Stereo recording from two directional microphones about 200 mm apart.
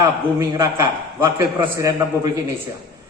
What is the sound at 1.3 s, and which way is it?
Speech, 15° right (ahead or behind).